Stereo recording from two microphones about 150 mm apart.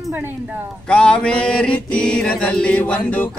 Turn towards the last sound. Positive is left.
turn(degrees=10)  # may be behind; listen again after turning